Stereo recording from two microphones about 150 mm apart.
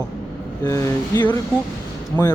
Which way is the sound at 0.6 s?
20° left (ahead or behind).